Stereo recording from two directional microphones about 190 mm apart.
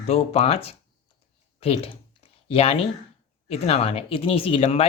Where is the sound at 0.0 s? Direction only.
30° left (ahead or behind).